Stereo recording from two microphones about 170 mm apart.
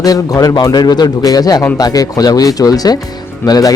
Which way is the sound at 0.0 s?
20° left (ahead or behind).